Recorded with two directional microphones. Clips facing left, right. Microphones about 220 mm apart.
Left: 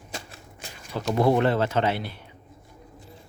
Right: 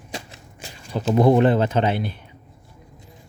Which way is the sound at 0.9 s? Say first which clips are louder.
Right 5 dB; 20° right (ahead or behind).